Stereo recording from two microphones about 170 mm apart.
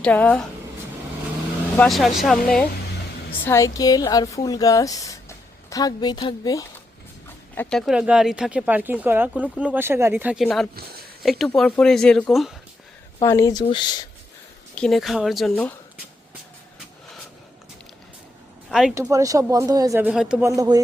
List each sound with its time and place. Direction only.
0.0 s speech: 5° left (ahead or behind)
1.7 s speech: 5° left (ahead or behind)
3.4 s a woman's voice: 15° left (ahead or behind)
7.5 s speech: 10° left (ahead or behind)
13.2 s a woman's voice: 15° left (ahead or behind)
14.8 s speech: centre (ahead or behind)
18.7 s speech: centre (ahead or behind)
19.1 s speech: 20° right (ahead or behind)
20.1 s speech: 5° right (ahead or behind)
20.4 s speech: 20° right (ahead or behind)